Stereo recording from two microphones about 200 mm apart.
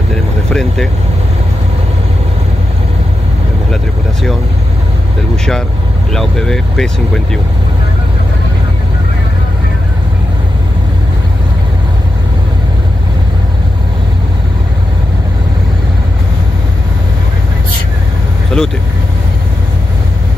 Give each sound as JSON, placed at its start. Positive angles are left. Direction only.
{"t": 0.5, "sound": "speech", "side_deg": 5}
{"t": 5.3, "sound": "speech", "side_deg": 5}
{"t": 18.5, "sound": "speech", "side_deg": 5}